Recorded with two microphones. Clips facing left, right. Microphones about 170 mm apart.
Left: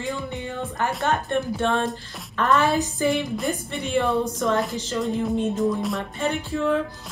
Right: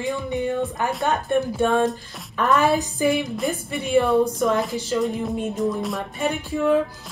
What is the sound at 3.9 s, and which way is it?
Speech, 10° right (ahead or behind).